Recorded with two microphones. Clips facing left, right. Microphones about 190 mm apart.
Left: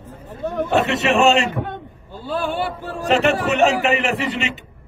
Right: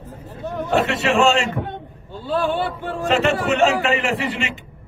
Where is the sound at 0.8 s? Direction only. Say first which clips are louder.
Left 1 dB; 20° left (ahead or behind).